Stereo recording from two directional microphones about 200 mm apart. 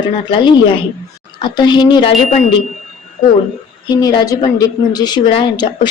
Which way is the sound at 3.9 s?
20° left (ahead or behind).